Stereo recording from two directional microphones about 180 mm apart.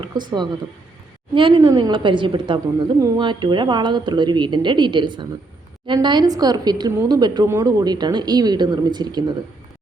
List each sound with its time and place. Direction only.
0.0 s a woman's voice: 25° right (ahead or behind)